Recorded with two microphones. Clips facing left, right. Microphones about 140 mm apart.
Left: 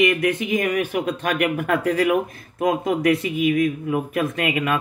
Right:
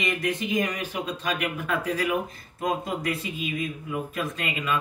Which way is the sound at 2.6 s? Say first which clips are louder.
Left 8 dB; 70° left (ahead or behind).